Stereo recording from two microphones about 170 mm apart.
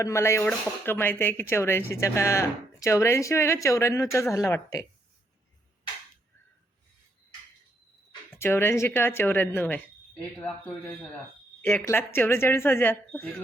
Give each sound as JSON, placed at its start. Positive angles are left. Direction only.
{"t": 0.0, "sound": "speech", "side_deg": 15}
{"t": 8.4, "sound": "speech", "side_deg": 15}
{"t": 11.6, "sound": "speech", "side_deg": 10}